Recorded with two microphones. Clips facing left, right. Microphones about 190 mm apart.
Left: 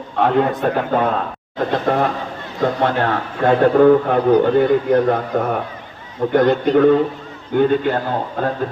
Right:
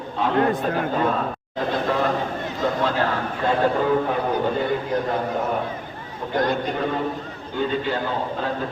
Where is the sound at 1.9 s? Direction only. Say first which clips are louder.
Left 4 dB; 60° left (ahead or behind).